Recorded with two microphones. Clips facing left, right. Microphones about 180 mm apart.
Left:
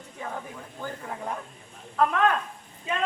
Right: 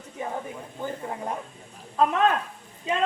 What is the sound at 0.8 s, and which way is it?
A woman's voice, 20° right (ahead or behind).